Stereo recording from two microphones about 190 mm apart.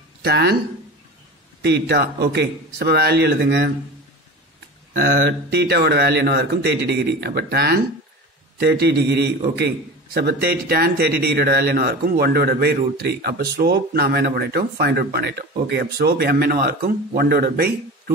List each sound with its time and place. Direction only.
0.2 s speech: 60° right (ahead or behind)
1.6 s a man's voice: 60° right (ahead or behind)
4.9 s a man's voice: 55° right (ahead or behind)